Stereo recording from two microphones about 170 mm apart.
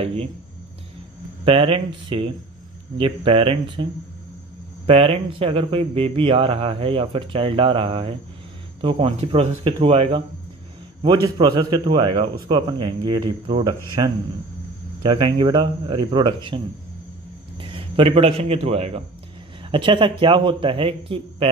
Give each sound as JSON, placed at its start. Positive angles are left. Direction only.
{"t": 1.4, "sound": "speech", "side_deg": -30}
{"t": 4.8, "sound": "a man's voice", "side_deg": -35}